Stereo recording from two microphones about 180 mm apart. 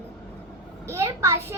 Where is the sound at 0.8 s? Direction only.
15° right (ahead or behind).